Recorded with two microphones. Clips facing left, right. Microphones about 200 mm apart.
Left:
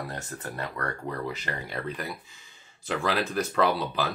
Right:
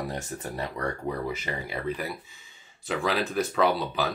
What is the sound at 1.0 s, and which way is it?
Speech, 10° right (ahead or behind).